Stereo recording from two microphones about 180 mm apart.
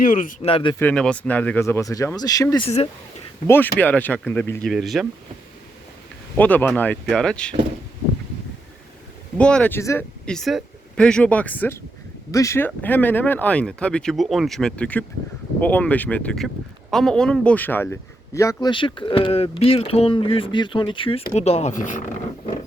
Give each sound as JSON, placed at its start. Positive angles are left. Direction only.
{"t": 0.0, "sound": "speech", "side_deg": 50}
{"t": 0.4, "sound": "speech", "side_deg": 30}
{"t": 0.8, "sound": "speech", "side_deg": 5}
{"t": 2.6, "sound": "speech", "side_deg": 35}
{"t": 3.4, "sound": "speech", "side_deg": 10}
{"t": 4.7, "sound": "speech", "side_deg": 0}
{"t": 6.3, "sound": "speech", "side_deg": 10}
{"t": 9.4, "sound": "speech", "side_deg": 5}
{"t": 10.2, "sound": "speech", "side_deg": 0}